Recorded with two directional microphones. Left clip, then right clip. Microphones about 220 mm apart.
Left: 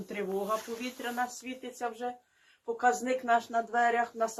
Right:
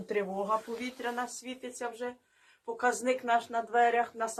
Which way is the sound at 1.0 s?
Centre (ahead or behind).